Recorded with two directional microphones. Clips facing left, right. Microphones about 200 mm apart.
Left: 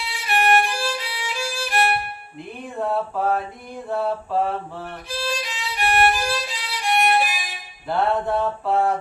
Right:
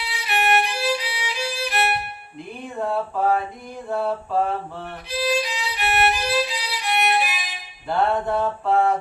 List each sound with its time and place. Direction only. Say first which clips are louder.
0.3 s violin: left 2 dB; 50° left (ahead or behind)
1.3 s music: left 1 dB; 45° left (ahead or behind)
2.7 s mantra: left 1 dB; centre (ahead or behind)
5.0 s music: right 6 dB; 45° left (ahead or behind)
7.9 s mantra: even; centre (ahead or behind)